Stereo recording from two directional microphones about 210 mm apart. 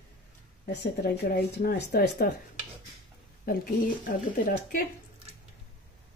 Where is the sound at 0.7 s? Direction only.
50° left (ahead or behind).